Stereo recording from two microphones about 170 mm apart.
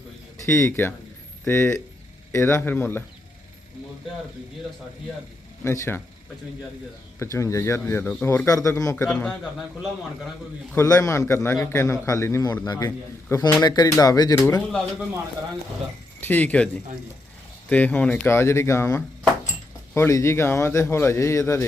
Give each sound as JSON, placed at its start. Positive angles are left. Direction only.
{"t": 0.4, "sound": "a man's voice", "side_deg": 15}
{"t": 5.6, "sound": "a man's voice", "side_deg": 15}
{"t": 7.2, "sound": "a man's voice", "side_deg": 15}
{"t": 9.0, "sound": "a man's voice", "side_deg": 5}
{"t": 10.8, "sound": "a man's voice", "side_deg": 20}
{"t": 16.2, "sound": "a man's voice", "side_deg": 10}